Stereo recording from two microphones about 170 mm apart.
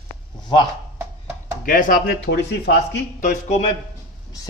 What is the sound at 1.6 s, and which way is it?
Speech, 55° left (ahead or behind).